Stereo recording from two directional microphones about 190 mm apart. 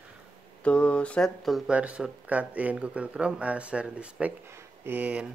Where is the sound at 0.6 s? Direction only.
5° left (ahead or behind).